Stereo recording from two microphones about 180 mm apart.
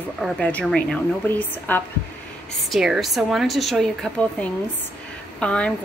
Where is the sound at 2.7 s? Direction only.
Centre (ahead or behind).